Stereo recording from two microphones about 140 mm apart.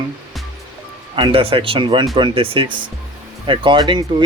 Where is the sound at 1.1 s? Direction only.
40° right (ahead or behind).